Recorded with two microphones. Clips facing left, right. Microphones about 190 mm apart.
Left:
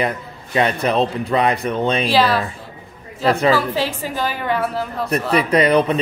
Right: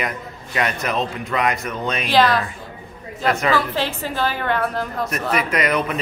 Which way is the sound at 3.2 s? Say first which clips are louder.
Left 4 dB; 35° left (ahead or behind).